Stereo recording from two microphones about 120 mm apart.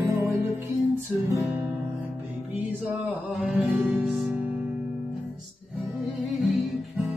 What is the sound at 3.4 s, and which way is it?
Music, centre (ahead or behind).